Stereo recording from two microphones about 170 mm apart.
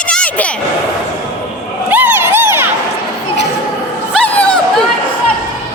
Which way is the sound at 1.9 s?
10° right (ahead or behind).